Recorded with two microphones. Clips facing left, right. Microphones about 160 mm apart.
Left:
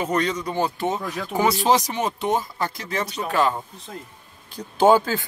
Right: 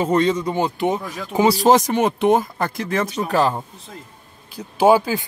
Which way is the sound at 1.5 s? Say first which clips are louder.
Right 5 dB; 45° right (ahead or behind).